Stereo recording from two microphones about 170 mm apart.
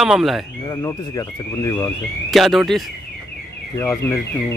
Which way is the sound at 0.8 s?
20° left (ahead or behind).